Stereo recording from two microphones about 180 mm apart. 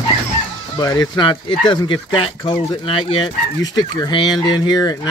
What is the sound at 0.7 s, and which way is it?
Speech, 20° left (ahead or behind).